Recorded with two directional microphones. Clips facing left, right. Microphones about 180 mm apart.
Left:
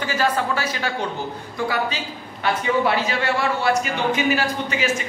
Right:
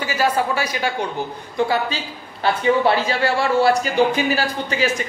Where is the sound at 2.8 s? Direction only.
30° right (ahead or behind).